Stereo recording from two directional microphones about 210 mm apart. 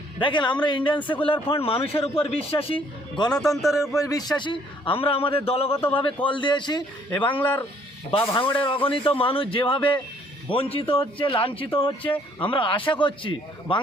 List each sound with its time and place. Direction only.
0.2 s a man's voice: 20° left (ahead or behind)
0.9 s speech: 10° left (ahead or behind)
1.2 s a man's voice: 25° left (ahead or behind)
3.3 s a man's voice: centre (ahead or behind)
4.0 s a man's voice: 15° left (ahead or behind)
5.7 s speech: 10° left (ahead or behind)
6.2 s a man's voice: 25° left (ahead or behind)
7.3 s speech: 10° left (ahead or behind)
8.2 s a man's voice: 20° left (ahead or behind)